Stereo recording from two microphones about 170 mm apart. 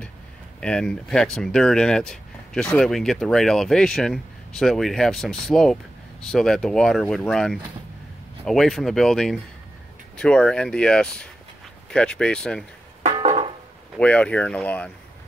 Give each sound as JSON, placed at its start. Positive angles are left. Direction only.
{"t": 0.6, "sound": "speech", "side_deg": 5}
{"t": 13.2, "sound": "music", "side_deg": -40}
{"t": 13.9, "sound": "speech", "side_deg": 5}